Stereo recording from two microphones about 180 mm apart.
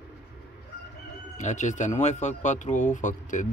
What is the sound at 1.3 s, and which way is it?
Speech, 40° left (ahead or behind).